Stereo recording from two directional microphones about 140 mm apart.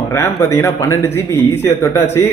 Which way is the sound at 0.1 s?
20° left (ahead or behind).